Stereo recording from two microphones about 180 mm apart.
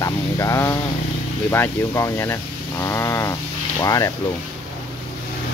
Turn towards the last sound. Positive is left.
turn(degrees=20)  # may be behind; listen again after turning